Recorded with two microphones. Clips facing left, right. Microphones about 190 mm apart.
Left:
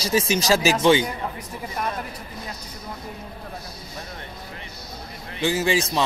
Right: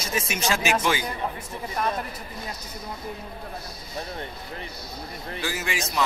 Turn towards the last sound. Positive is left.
turn(degrees=30)  # may be behind; listen again after turning